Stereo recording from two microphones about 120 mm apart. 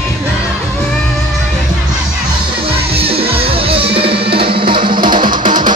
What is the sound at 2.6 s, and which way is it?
Music, 55° right (ahead or behind).